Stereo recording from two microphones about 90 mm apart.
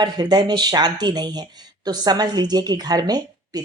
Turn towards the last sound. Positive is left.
turn(degrees=-45)  # may be behind; listen again after turning